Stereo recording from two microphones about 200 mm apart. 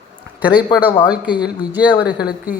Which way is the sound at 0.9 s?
20° left (ahead or behind).